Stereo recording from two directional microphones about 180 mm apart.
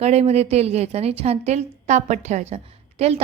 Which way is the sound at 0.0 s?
35° right (ahead or behind).